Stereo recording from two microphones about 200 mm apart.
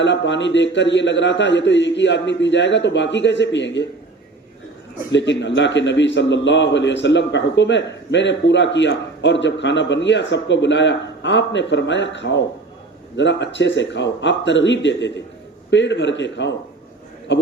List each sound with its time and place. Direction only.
0.0 s a man's voice: 65° left (ahead or behind)
5.1 s a man's voice: 65° left (ahead or behind)